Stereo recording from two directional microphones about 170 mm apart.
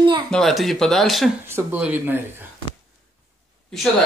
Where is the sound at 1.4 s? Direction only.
15° right (ahead or behind).